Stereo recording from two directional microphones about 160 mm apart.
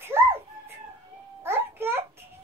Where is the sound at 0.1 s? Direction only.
15° right (ahead or behind).